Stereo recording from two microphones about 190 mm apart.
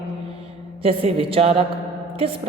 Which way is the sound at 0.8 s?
30° right (ahead or behind).